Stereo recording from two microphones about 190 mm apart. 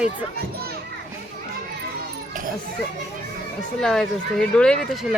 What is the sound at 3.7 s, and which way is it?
Speech, 5° left (ahead or behind).